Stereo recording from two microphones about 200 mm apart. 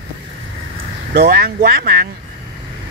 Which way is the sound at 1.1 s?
50° right (ahead or behind).